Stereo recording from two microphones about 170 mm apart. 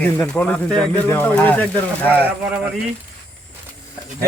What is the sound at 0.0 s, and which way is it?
Speech, 10° left (ahead or behind).